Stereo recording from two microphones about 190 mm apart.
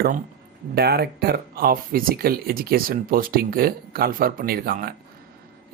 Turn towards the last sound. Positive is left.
turn(degrees=-50)  # may be behind; listen again after turning